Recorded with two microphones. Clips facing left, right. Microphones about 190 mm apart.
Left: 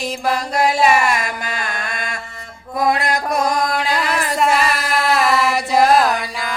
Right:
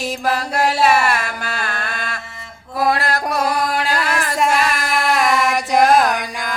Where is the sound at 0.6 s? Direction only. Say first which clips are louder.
Even; 10° left (ahead or behind).